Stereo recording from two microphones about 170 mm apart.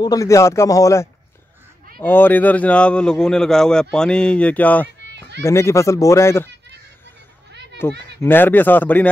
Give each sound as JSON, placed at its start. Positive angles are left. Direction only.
{"t": 0.0, "sound": "speech", "side_deg": 20}
{"t": 2.0, "sound": "a man's voice", "side_deg": 10}
{"t": 7.8, "sound": "a man's voice", "side_deg": 15}